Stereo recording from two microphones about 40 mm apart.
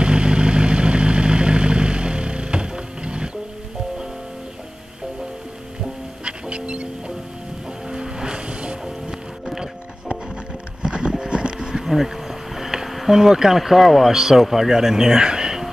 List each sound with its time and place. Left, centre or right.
0.0 s vehicle: right
6.2 s music: right
7.9 s music: centre
10.8 s a sound: right
11.7 s a sound: centre
14.1 s speech: centre